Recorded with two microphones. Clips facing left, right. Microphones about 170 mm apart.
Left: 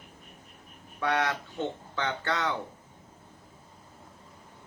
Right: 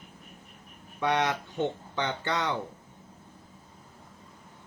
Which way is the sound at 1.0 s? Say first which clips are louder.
Right 1 dB; 20° right (ahead or behind).